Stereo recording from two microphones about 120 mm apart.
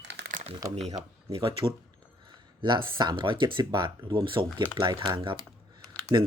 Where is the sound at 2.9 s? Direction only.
45° right (ahead or behind).